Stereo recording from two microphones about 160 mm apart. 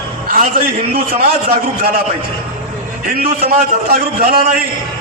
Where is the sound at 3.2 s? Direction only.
70° right (ahead or behind).